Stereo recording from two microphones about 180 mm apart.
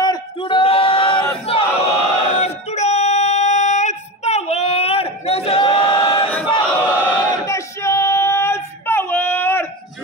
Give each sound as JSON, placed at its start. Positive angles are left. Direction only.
{"t": 0.0, "sound": "a sound", "side_deg": 25}
{"t": 1.4, "sound": "battle cry", "side_deg": 35}
{"t": 6.9, "sound": "choir", "side_deg": 10}